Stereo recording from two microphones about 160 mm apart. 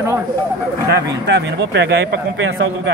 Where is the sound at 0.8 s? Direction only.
90° right.